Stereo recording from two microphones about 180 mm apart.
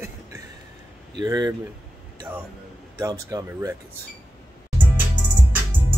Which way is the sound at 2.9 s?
20° right (ahead or behind).